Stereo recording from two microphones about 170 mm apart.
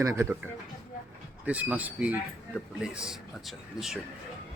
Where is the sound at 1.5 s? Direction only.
10° right (ahead or behind).